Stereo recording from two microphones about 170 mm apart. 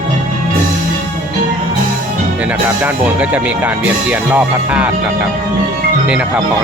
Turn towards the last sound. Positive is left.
turn(degrees=-10)  # may be behind; listen again after turning